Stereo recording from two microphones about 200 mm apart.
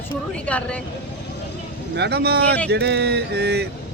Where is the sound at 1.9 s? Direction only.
55° right (ahead or behind).